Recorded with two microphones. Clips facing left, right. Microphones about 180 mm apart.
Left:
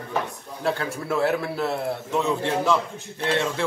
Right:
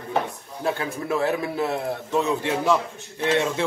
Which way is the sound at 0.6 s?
15° right (ahead or behind).